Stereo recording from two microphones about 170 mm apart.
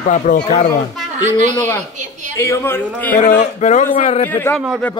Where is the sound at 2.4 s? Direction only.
15° left (ahead or behind).